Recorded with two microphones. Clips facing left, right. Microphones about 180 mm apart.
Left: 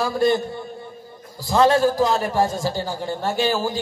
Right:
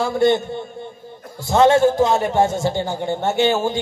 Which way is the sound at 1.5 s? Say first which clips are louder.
Right 3 dB; 25° right (ahead or behind).